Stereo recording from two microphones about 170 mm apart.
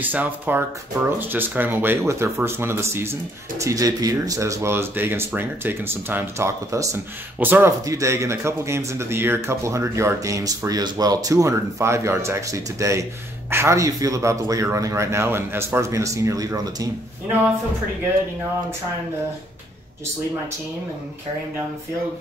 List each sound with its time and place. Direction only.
0.0 s speech: 10° right (ahead or behind)